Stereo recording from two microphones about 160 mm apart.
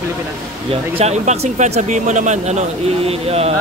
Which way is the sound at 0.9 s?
45° right (ahead or behind).